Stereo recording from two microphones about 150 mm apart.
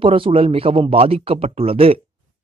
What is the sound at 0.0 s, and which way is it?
Speech, 35° right (ahead or behind).